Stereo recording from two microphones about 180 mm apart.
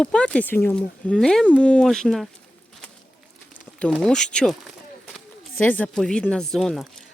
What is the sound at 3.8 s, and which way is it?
Speech, centre (ahead or behind).